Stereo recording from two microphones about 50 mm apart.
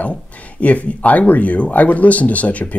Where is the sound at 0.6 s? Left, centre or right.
Left.